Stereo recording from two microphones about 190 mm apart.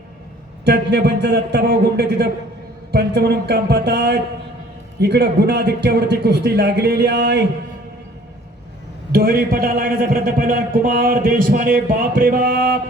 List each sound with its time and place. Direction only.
0.6 s a man's voice: 60° right (ahead or behind)
9.1 s speech: 50° right (ahead or behind)